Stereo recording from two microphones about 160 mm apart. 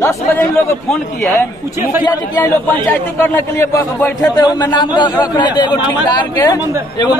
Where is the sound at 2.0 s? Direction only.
20° left (ahead or behind).